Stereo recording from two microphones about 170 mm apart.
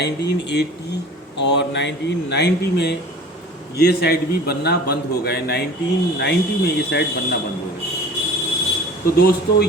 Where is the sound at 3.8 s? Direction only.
70° left (ahead or behind).